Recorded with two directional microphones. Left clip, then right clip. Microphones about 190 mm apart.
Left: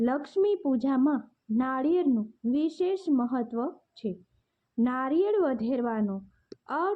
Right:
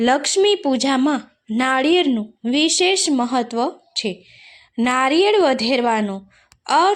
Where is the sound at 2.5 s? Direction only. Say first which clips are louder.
Right 11 dB; 15° right (ahead or behind).